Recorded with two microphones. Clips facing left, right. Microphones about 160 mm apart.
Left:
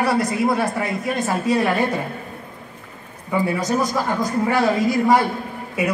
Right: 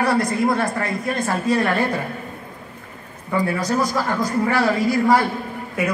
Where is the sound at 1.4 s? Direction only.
15° left (ahead or behind).